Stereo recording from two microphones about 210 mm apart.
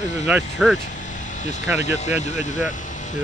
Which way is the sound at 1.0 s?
35° left (ahead or behind).